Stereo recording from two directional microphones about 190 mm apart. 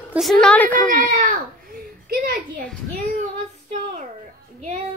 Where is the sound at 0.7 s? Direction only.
45° right (ahead or behind).